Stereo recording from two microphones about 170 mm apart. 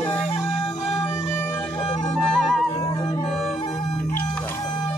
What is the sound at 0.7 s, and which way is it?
Music, 20° left (ahead or behind).